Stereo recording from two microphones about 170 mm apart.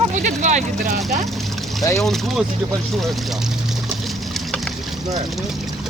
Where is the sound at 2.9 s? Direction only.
Centre (ahead or behind).